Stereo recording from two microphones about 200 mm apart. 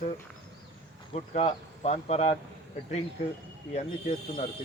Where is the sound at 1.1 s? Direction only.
35° left (ahead or behind).